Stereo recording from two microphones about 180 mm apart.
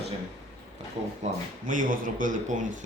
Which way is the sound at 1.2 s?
40° right (ahead or behind).